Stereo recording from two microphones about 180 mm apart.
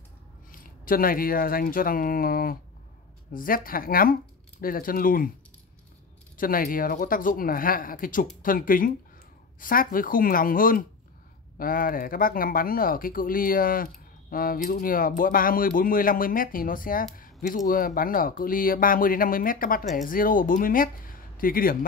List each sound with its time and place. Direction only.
0.5 s speech: 50° left (ahead or behind)
6.3 s speech: 50° left (ahead or behind)